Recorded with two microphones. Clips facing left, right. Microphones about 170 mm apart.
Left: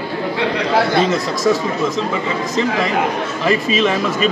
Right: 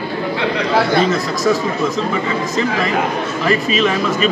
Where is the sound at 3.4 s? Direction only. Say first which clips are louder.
Even; 20° left (ahead or behind).